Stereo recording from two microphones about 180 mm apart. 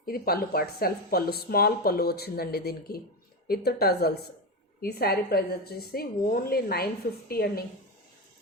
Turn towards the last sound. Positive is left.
turn(degrees=60)  # may be behind; listen again after turning